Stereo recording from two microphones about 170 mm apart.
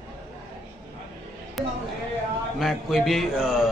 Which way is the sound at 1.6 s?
Centre (ahead or behind).